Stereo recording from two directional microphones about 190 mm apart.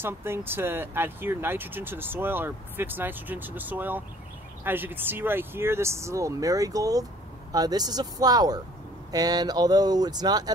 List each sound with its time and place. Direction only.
0.0 s speech: 10° right (ahead or behind)